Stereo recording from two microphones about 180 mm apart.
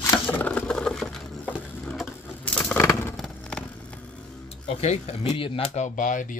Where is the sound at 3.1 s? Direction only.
5° left (ahead or behind).